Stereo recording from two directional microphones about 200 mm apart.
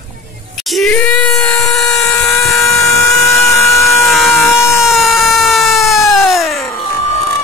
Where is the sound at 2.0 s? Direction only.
15° left (ahead or behind).